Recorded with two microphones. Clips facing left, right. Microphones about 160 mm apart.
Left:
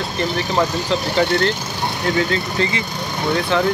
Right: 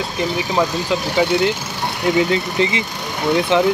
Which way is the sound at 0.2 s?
10° right (ahead or behind).